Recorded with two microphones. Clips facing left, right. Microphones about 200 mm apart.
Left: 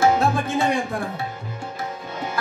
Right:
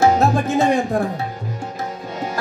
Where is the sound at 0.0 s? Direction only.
40° right (ahead or behind).